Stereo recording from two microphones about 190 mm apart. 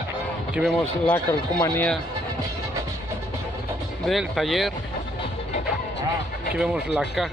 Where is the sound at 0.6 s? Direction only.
5° right (ahead or behind).